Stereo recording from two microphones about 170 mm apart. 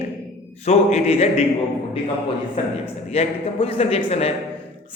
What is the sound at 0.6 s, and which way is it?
Speech, 40° left (ahead or behind).